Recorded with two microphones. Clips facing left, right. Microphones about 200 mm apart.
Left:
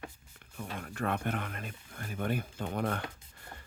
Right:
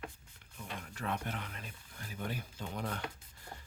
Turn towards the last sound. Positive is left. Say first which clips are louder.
# left 7 dB
turn(degrees=55)  # may be behind; listen again after turning